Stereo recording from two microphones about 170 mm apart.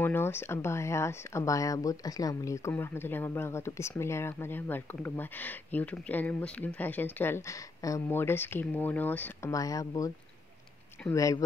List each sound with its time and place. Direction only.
0.0 s speech: 15° left (ahead or behind)